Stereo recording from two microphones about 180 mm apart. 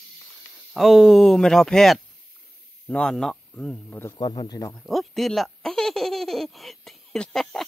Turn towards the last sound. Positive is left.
turn(degrees=0)  # may be behind; listen again after turning